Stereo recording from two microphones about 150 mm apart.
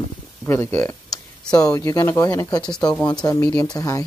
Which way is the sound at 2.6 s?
5° left (ahead or behind).